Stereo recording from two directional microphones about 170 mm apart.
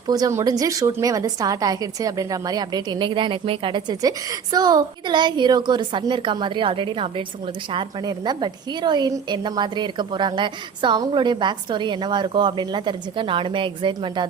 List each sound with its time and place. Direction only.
0.1 s a woman's voice: 20° right (ahead or behind)